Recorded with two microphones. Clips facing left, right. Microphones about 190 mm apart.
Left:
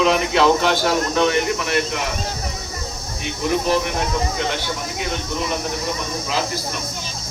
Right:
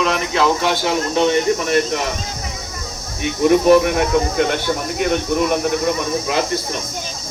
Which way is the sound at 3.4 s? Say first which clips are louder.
Right 8 dB; 60° right (ahead or behind).